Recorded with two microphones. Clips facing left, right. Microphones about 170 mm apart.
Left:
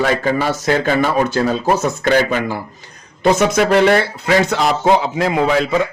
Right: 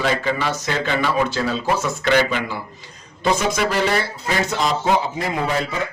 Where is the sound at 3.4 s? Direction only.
60° left (ahead or behind).